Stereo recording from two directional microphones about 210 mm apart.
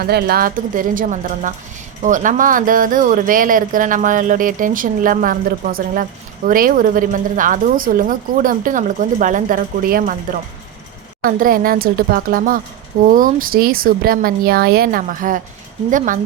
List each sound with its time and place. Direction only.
0.0 s speech: 45° right (ahead or behind)
11.2 s speech: 40° right (ahead or behind)